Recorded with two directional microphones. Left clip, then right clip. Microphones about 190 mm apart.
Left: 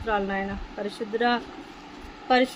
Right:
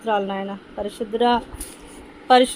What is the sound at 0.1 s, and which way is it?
Speech, 15° right (ahead or behind).